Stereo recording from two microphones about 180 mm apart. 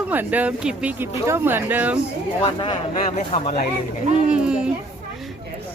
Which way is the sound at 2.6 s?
30° left (ahead or behind).